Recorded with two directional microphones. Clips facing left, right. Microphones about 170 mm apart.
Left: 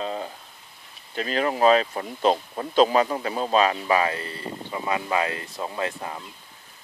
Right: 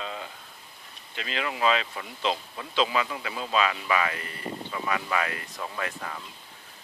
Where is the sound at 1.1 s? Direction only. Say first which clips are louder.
Left 8 dB; 40° left (ahead or behind).